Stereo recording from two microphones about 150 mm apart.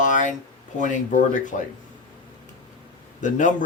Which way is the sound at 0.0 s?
55° left (ahead or behind).